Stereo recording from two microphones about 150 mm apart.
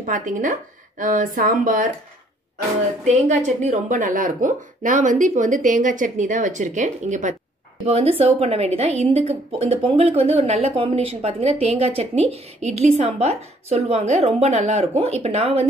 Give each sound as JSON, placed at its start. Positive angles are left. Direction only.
{"t": 0.0, "sound": "speech", "side_deg": -60}
{"t": 3.1, "sound": "speech", "side_deg": -55}
{"t": 7.8, "sound": "speech", "side_deg": -40}